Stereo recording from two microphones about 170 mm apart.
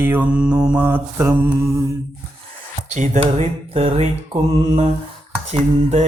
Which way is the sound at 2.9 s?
45° right (ahead or behind).